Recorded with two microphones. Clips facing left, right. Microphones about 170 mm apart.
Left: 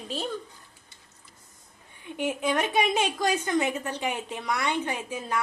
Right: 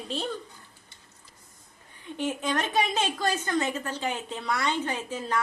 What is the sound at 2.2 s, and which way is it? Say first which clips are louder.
A woman's voice: left 2 dB; 10° left (ahead or behind).